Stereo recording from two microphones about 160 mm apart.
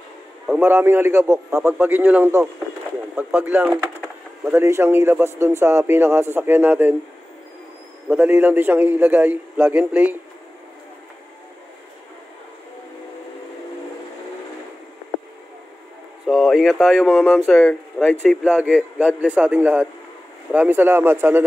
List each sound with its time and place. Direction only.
0.5 s a man's voice: 10° right (ahead or behind)
8.1 s a man's voice: 15° right (ahead or behind)
16.3 s speech: centre (ahead or behind)
18.4 s a man's voice: 10° right (ahead or behind)